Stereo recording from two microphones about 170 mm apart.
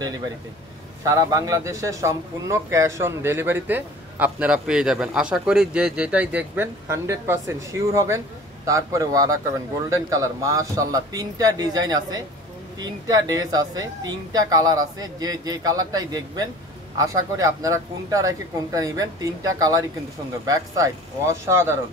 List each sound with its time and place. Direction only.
1.0 s a woman's voice: 20° right (ahead or behind)